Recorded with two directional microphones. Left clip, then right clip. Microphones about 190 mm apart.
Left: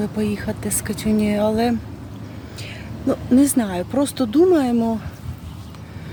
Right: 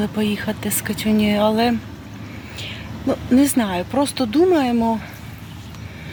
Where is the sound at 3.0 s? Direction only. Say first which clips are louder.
Even; 10° left (ahead or behind).